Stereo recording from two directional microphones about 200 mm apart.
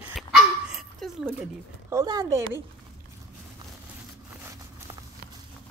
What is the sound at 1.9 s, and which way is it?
Speech, 15° right (ahead or behind).